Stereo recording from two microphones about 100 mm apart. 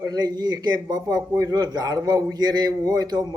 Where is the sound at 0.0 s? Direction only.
40° right (ahead or behind).